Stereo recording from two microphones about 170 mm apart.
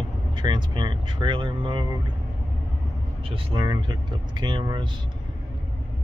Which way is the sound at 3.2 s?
30° right (ahead or behind).